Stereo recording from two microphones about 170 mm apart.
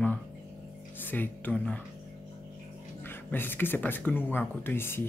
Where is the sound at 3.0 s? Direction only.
10° left (ahead or behind).